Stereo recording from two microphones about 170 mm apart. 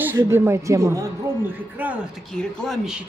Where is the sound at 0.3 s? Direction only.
15° right (ahead or behind).